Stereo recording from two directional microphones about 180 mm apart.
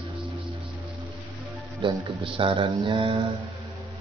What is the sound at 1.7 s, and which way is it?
Speech, 30° right (ahead or behind).